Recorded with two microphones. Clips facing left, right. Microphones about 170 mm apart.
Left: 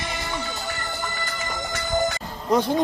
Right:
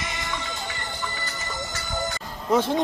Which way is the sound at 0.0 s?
35° left (ahead or behind).